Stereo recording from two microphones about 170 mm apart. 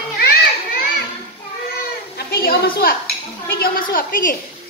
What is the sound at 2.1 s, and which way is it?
A woman's voice, 65° left (ahead or behind).